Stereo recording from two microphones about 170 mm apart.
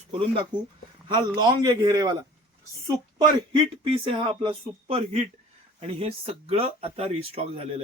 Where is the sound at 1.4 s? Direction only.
25° right (ahead or behind).